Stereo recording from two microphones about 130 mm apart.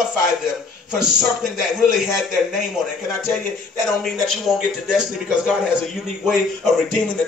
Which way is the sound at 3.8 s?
Centre (ahead or behind).